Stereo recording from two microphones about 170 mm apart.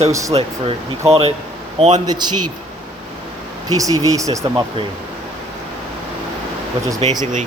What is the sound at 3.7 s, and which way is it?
Speech, 20° right (ahead or behind).